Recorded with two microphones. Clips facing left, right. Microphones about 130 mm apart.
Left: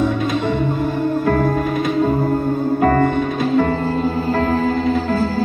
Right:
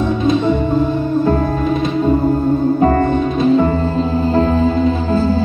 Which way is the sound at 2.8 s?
25° right (ahead or behind).